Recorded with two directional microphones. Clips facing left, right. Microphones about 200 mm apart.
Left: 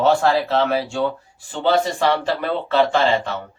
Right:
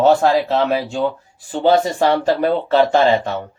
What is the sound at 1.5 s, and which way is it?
Speech, 40° right (ahead or behind).